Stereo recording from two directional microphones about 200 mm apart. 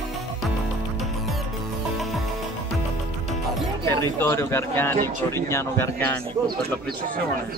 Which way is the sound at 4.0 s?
10° left (ahead or behind).